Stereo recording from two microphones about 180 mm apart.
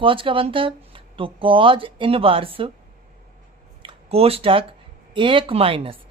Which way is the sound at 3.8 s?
30° right (ahead or behind).